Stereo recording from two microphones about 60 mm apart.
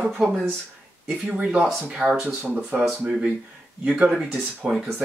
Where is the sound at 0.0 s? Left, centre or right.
Right.